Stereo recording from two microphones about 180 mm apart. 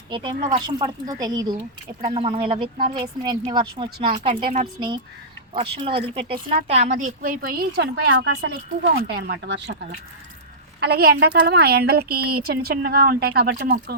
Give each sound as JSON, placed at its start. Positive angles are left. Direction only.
{"t": 0.1, "sound": "speech", "side_deg": -25}
{"t": 2.0, "sound": "speech", "side_deg": -30}
{"t": 5.7, "sound": "speech", "side_deg": -30}
{"t": 6.3, "sound": "a woman's voice", "side_deg": -60}
{"t": 6.7, "sound": "speech", "side_deg": -40}
{"t": 7.0, "sound": "a woman's voice", "side_deg": -50}
{"t": 8.2, "sound": "speech", "side_deg": -75}
{"t": 10.8, "sound": "a woman's voice", "side_deg": -65}